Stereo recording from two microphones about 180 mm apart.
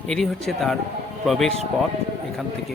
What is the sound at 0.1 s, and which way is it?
A man's voice, centre (ahead or behind).